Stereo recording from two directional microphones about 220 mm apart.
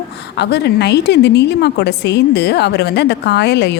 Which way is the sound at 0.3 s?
50° left (ahead or behind).